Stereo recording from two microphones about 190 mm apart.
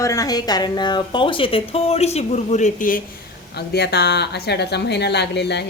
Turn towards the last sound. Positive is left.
turn(degrees=65)  # may be behind; listen again after turning